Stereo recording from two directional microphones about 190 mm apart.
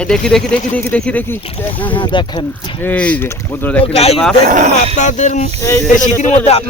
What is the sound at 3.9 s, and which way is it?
Speech, 30° left (ahead or behind).